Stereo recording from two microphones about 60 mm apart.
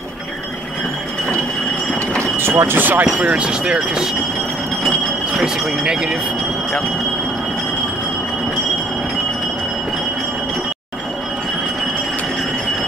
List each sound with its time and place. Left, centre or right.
2.3 s speech: right
2.8 s speech: right
3.2 s speech: centre
5.4 s speech: centre